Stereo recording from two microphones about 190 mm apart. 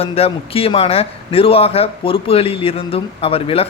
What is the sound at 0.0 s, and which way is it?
A man's voice, 30° left (ahead or behind).